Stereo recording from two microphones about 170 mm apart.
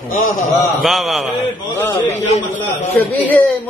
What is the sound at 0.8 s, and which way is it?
Speech, centre (ahead or behind).